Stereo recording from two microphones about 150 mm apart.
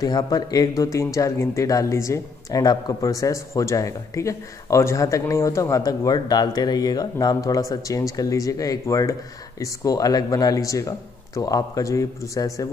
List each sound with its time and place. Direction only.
0.0 s speech: 25° left (ahead or behind)